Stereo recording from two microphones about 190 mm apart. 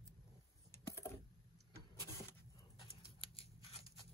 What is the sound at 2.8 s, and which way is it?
Scissors, 30° left (ahead or behind).